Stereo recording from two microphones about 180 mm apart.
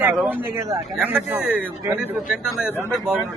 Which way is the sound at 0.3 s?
15° right (ahead or behind).